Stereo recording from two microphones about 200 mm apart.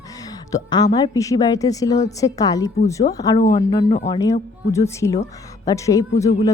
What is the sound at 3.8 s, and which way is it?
Speech, 35° left (ahead or behind).